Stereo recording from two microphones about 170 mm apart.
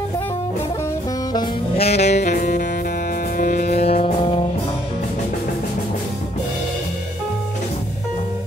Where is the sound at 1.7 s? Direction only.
40° left (ahead or behind).